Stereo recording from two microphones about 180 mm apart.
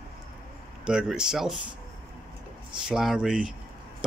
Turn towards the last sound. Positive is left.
turn(degrees=-5)  # may be behind; listen again after turning